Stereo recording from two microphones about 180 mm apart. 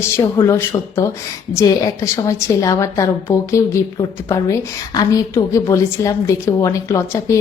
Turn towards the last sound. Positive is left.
turn(degrees=15)  # may be behind; listen again after turning